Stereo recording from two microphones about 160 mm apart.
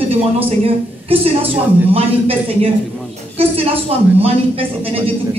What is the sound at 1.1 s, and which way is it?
A man's voice, 35° right (ahead or behind).